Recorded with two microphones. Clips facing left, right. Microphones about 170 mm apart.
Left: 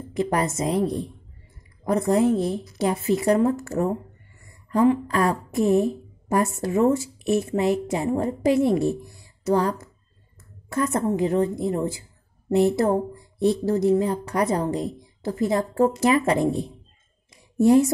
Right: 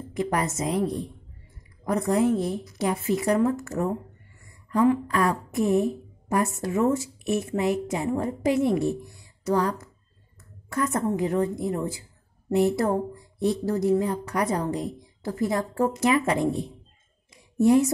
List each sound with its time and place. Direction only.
0.1 s a woman's voice: 30° left (ahead or behind)
17.6 s a woman's voice: 35° left (ahead or behind)